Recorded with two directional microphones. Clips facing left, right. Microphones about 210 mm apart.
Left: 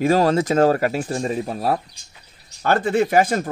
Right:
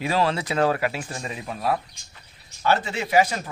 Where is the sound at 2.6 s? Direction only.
50° left (ahead or behind).